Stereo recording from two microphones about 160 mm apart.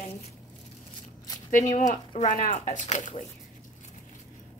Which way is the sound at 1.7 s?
50° left (ahead or behind).